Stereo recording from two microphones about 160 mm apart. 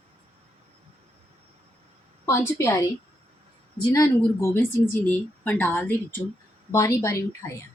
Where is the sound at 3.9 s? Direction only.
20° left (ahead or behind).